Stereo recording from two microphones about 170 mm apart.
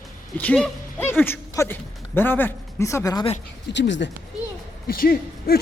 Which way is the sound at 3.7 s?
90° left.